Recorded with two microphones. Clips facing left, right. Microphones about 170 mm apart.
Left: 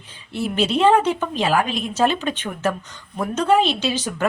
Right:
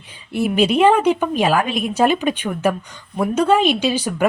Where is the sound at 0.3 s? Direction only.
15° right (ahead or behind).